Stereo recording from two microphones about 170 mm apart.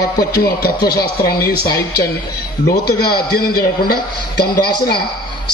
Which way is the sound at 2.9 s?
65° left (ahead or behind).